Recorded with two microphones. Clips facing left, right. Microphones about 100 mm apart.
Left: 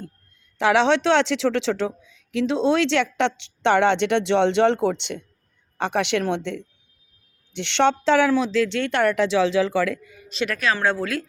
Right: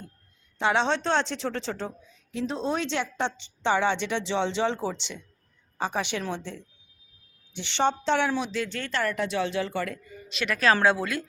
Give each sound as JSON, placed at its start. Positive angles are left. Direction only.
{"t": 0.6, "sound": "a woman's voice", "side_deg": 90}
{"t": 10.6, "sound": "speech", "side_deg": -35}
{"t": 10.8, "sound": "a woman's voice", "side_deg": -5}